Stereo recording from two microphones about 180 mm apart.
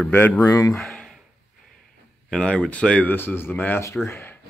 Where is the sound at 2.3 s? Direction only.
5° left (ahead or behind).